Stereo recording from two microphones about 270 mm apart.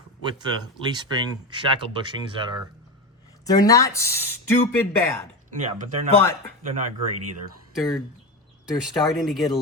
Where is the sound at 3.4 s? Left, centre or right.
Centre.